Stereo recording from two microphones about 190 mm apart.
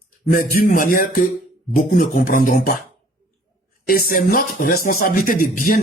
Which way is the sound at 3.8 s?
50° left (ahead or behind).